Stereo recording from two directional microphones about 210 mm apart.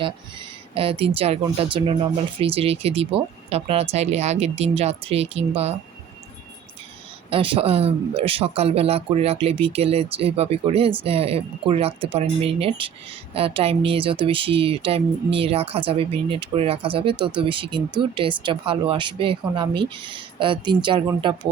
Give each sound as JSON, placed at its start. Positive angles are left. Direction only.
{"t": 0.7, "sound": "speech", "side_deg": -25}
{"t": 7.3, "sound": "speech", "side_deg": -25}